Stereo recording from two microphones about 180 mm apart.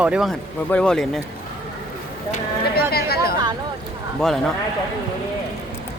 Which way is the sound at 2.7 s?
60° left (ahead or behind).